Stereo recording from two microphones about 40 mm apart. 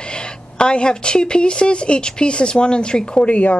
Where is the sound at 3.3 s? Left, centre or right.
Left.